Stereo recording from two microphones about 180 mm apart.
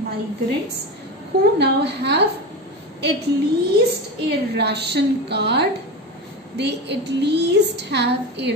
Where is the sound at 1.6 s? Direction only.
70° right (ahead or behind).